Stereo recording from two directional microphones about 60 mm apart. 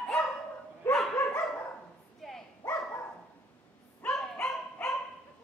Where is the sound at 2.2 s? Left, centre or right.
Centre.